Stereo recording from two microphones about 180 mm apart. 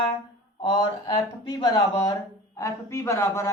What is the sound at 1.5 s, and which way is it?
A man's voice, 20° left (ahead or behind).